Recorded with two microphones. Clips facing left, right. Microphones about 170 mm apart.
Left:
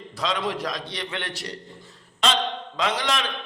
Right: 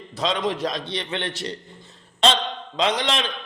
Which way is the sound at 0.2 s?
25° right (ahead or behind).